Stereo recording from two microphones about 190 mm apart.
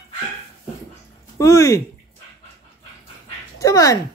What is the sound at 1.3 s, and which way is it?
Speech, 15° left (ahead or behind).